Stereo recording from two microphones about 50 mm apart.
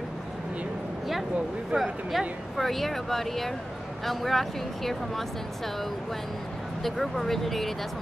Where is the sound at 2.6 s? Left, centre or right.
Centre.